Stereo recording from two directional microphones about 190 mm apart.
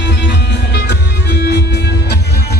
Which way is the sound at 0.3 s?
65° left (ahead or behind).